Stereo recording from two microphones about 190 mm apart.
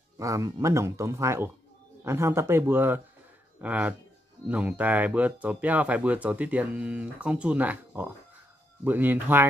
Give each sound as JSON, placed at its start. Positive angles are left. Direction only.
{"t": 0.2, "sound": "speech", "side_deg": -15}